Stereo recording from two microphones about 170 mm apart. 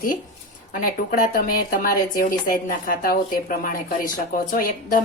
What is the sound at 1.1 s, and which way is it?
A woman's voice, 55° left (ahead or behind).